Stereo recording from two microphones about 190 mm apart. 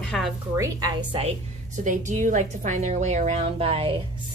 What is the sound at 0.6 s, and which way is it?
Speech, 20° right (ahead or behind).